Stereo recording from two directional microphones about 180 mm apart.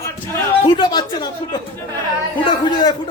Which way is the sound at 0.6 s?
25° left (ahead or behind).